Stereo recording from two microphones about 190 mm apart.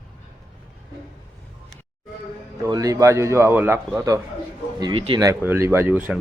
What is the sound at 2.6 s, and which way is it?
A man's voice, 20° right (ahead or behind).